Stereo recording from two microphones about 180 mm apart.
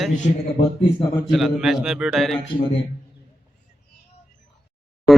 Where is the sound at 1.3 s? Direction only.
Centre (ahead or behind).